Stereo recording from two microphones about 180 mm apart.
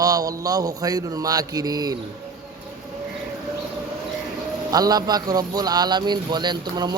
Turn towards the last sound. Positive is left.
turn(degrees=-25)  # may be behind; listen again after turning